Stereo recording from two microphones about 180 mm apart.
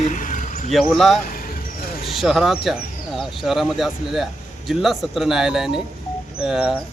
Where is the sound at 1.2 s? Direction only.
55° left (ahead or behind).